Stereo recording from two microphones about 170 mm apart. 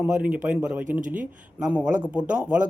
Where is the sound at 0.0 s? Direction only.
5° right (ahead or behind).